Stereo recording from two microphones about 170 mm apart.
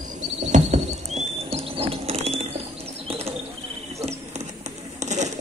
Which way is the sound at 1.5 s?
35° right (ahead or behind).